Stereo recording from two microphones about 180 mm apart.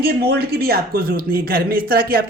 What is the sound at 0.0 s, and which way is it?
Speech, 60° right (ahead or behind).